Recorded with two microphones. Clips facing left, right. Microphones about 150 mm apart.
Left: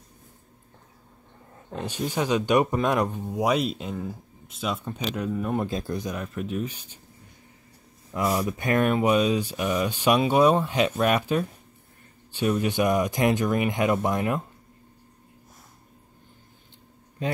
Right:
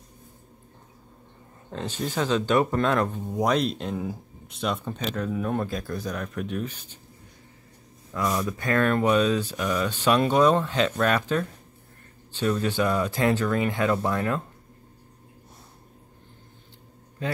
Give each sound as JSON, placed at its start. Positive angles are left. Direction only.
{"t": 1.7, "sound": "speech", "side_deg": 15}
{"t": 5.7, "sound": "speech", "side_deg": 20}
{"t": 6.0, "sound": "speech", "side_deg": 5}
{"t": 8.1, "sound": "speech", "side_deg": 30}
{"t": 8.5, "sound": "speech", "side_deg": 20}
{"t": 17.2, "sound": "a man's voice", "side_deg": 20}